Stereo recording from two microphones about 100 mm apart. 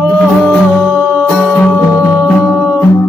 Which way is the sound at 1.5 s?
15° left (ahead or behind).